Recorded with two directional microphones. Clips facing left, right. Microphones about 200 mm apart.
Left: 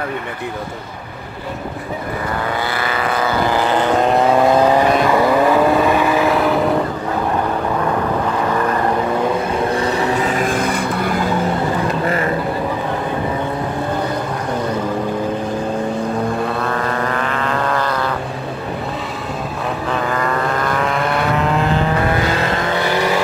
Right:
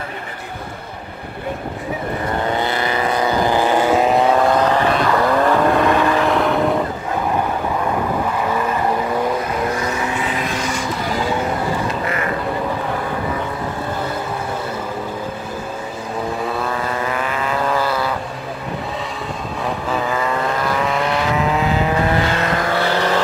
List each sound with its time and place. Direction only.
2.5 s vehicle: 20° right (ahead or behind); by 6.6 s 5° left (ahead or behind)
9.7 s vehicle: 30° left (ahead or behind); by 11.1 s 60° left (ahead or behind)
16.4 s vehicle: 5° right (ahead or behind)
19.9 s vehicle: 5° right (ahead or behind)
22.8 s vehicle: 15° left (ahead or behind)